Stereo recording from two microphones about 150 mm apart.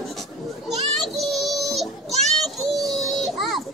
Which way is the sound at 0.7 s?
Centre (ahead or behind).